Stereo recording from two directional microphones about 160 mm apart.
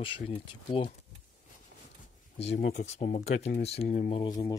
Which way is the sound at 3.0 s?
40° left (ahead or behind).